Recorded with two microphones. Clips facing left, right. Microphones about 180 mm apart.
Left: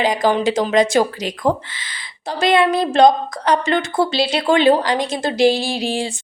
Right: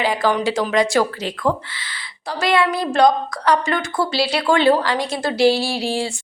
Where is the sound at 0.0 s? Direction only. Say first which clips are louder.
Left 2 dB; 20° left (ahead or behind).